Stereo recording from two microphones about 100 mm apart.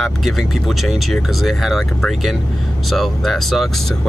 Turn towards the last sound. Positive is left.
turn(degrees=0)  # may be behind; listen again after turning